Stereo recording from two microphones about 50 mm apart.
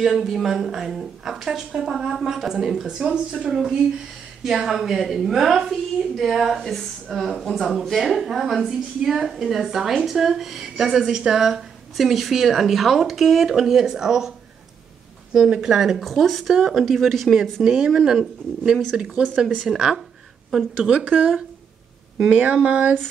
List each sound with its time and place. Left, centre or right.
0.0 s a woman's voice: centre
15.3 s a woman's voice: centre
21.0 s speech: right
22.3 s speech: right